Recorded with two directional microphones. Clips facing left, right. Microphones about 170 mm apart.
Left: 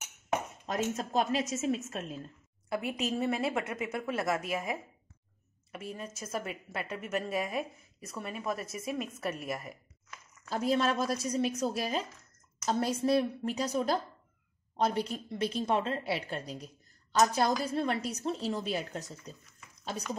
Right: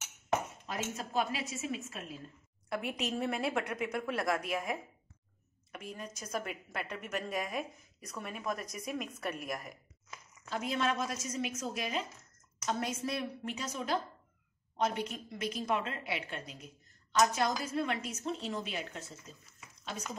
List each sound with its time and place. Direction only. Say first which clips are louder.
0.7 s speech: left 9 dB; 40° left (ahead or behind)
2.7 s a woman's voice: left 3 dB; centre (ahead or behind)
10.5 s speech: left 5 dB; 35° left (ahead or behind)